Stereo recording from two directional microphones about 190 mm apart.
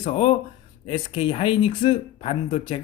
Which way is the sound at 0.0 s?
30° left (ahead or behind).